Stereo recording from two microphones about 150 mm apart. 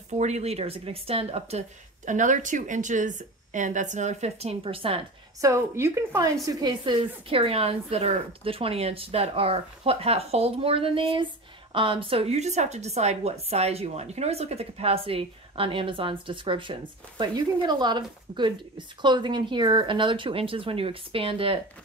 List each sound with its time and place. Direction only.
0.1 s speech: 50° right (ahead or behind)
2.0 s a woman's voice: 55° right (ahead or behind); by 5.0 s 40° right (ahead or behind)
5.4 s a woman's voice: 20° right (ahead or behind); by 21.5 s 35° right (ahead or behind)